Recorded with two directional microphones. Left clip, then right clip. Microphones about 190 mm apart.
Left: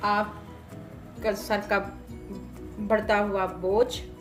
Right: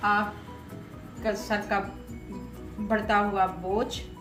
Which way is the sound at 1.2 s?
55° left (ahead or behind).